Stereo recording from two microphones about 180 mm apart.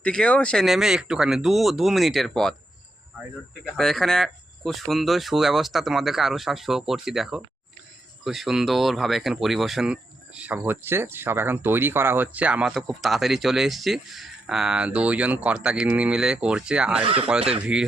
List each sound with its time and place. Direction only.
0.0 s speech: 5° left (ahead or behind)
3.8 s speech: centre (ahead or behind)
17.0 s speech: 30° right (ahead or behind)
17.7 s speech: 5° right (ahead or behind)